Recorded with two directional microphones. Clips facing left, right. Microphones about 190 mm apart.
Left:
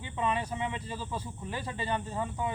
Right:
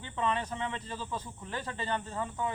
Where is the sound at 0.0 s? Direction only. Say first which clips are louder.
Left 1 dB; 10° left (ahead or behind).